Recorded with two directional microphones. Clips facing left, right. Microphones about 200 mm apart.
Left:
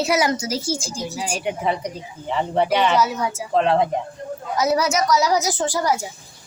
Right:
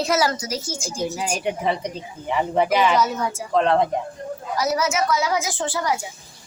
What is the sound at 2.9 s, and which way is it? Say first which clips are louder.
A woman's voice: left 1 dB; 5° left (ahead or behind).